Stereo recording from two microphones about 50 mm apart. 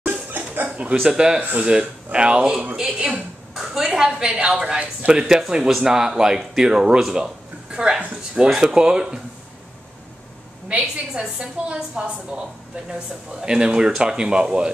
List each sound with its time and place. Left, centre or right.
0.0 s dog: right
0.7 s a woman's voice: right
1.0 s a woman's voice: centre
3.5 s speech: centre
4.1 s a woman's voice: right
5.2 s a woman's voice: centre; by 8.5 s right
8.5 s speech: centre
10.7 s a woman's voice: centre